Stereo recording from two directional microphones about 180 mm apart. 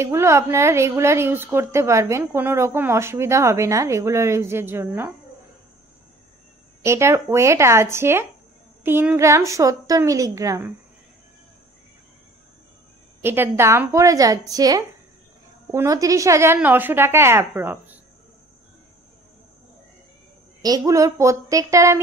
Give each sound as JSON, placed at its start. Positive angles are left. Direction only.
{"t": 0.0, "sound": "a woman's voice", "side_deg": -15}
{"t": 6.8, "sound": "a woman's voice", "side_deg": -15}
{"t": 13.2, "sound": "a woman's voice", "side_deg": -10}
{"t": 20.6, "sound": "a woman's voice", "side_deg": -20}